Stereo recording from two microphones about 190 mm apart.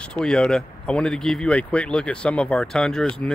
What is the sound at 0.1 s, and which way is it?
Speech, 5° left (ahead or behind).